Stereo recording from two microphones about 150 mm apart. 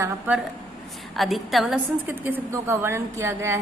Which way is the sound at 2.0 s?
15° right (ahead or behind).